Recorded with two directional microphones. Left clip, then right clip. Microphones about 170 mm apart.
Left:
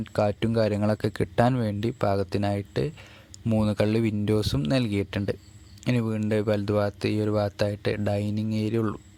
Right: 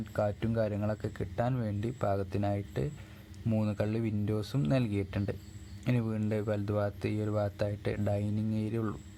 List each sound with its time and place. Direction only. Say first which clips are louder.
0.0 s speech: left 7 dB; 35° left (ahead or behind)